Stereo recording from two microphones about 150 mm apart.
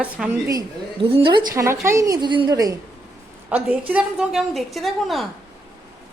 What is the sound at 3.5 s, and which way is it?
A woman's voice, 10° right (ahead or behind).